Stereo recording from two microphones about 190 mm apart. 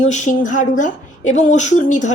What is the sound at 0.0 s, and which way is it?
A woman's voice, 40° left (ahead or behind).